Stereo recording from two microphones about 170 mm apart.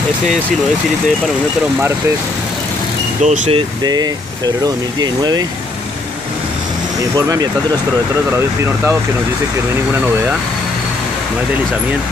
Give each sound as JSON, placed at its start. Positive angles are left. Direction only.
{"t": 3.2, "sound": "speech", "side_deg": -40}
{"t": 3.8, "sound": "speech", "side_deg": -25}
{"t": 7.2, "sound": "speech", "side_deg": -20}